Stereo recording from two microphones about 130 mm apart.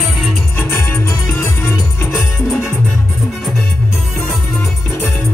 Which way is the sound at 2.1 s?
5° left (ahead or behind).